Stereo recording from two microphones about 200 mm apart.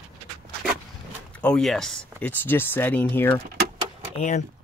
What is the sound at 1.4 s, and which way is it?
Speech, 5° left (ahead or behind).